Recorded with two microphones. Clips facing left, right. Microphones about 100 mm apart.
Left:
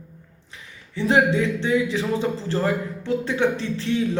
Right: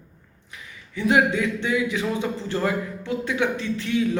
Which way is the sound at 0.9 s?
30° left (ahead or behind).